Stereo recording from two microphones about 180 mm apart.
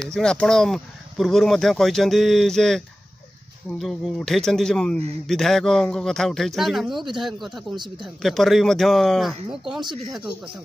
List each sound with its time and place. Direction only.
0.1 s speech: 5° left (ahead or behind)